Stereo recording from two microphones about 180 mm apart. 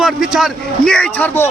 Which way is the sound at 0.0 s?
Centre (ahead or behind).